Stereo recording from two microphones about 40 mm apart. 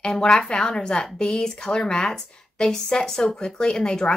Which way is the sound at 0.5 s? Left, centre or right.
Centre.